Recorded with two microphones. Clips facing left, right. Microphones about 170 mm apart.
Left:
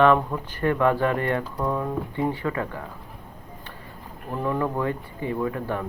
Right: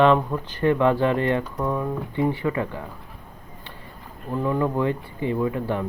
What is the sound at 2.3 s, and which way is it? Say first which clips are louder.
Speech: right 3 dB; 20° right (ahead or behind).